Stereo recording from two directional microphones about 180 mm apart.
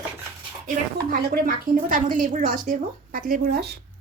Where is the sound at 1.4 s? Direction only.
50° right (ahead or behind).